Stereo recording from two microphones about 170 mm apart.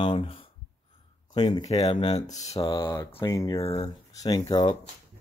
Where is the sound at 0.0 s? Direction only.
30° left (ahead or behind).